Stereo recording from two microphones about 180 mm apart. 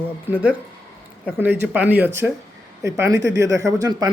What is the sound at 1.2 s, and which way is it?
Speech, 10° right (ahead or behind).